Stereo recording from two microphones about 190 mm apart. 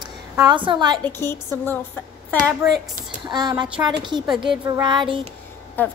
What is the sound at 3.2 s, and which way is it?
Speech, 20° right (ahead or behind).